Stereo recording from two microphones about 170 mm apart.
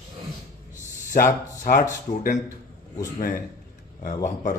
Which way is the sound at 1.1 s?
55° left (ahead or behind).